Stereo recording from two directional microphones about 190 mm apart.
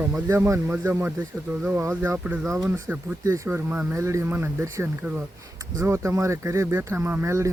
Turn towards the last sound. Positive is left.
turn(degrees=-15)  # may be behind; listen again after turning